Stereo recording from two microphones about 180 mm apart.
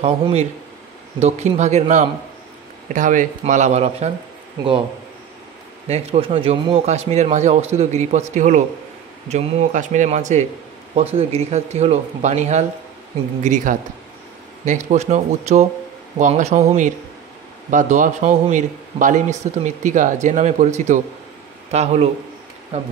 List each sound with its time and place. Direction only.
0.0 s a man's voice: 35° right (ahead or behind)
5.9 s a man's voice: 35° right (ahead or behind)